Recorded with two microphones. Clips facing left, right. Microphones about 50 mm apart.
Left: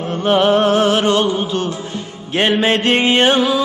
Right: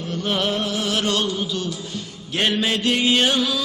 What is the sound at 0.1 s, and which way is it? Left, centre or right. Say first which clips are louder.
Music: left 10 dB; left.